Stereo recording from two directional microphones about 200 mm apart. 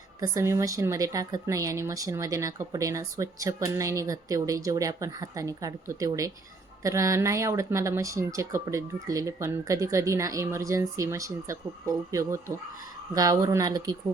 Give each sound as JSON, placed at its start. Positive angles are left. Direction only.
{"t": 0.2, "sound": "speech", "side_deg": -15}